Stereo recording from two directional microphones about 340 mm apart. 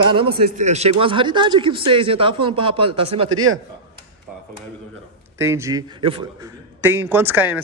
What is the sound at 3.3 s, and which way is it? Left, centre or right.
Speech, right.